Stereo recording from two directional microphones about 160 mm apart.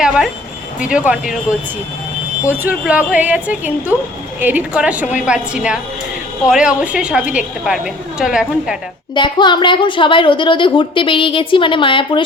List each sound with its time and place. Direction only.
0.0 s a woman's voice: 5° right (ahead or behind)
2.5 s a woman's voice: 10° right (ahead or behind)
9.1 s a woman's voice: 30° left (ahead or behind)